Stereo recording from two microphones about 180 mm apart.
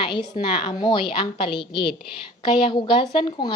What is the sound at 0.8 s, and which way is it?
A woman's voice, 25° left (ahead or behind).